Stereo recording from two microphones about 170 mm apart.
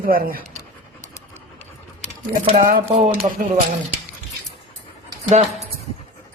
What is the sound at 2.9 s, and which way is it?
Speech, 35° right (ahead or behind).